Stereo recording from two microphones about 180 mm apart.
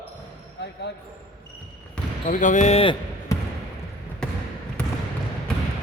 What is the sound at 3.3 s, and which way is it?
Basketball bounce, 15° left (ahead or behind).